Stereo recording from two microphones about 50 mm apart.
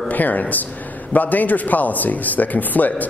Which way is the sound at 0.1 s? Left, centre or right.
Left.